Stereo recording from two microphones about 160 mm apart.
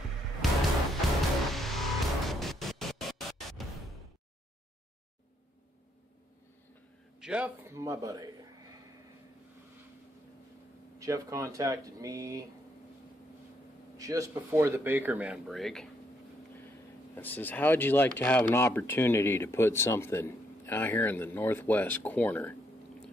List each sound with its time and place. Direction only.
0.4 s music: centre (ahead or behind)
7.2 s speech: 5° right (ahead or behind); by 8.3 s 20° right (ahead or behind)
11.0 s speech: 20° right (ahead or behind)
13.9 s speech: 20° right (ahead or behind); by 22.6 s 10° left (ahead or behind)